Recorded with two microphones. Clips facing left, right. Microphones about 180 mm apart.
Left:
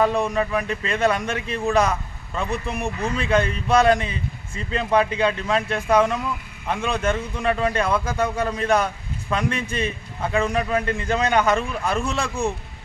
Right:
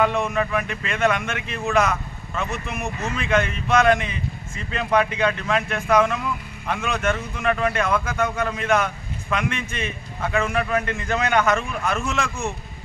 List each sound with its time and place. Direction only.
0.0 s a man's voice: 35° left (ahead or behind)